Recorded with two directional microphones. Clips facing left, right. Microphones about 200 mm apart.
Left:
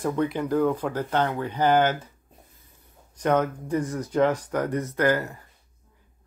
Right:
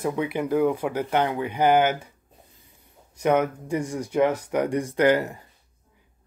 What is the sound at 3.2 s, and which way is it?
Speech, 10° right (ahead or behind).